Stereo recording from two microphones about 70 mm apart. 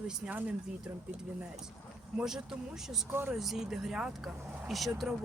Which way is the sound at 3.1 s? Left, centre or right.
Right.